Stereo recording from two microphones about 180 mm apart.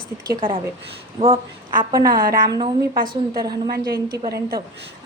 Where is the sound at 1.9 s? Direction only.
20° right (ahead or behind).